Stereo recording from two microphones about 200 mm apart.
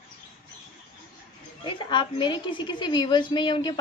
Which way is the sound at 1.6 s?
25° left (ahead or behind).